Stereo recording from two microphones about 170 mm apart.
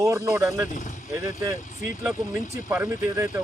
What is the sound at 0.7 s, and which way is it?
Speech, 45° left (ahead or behind).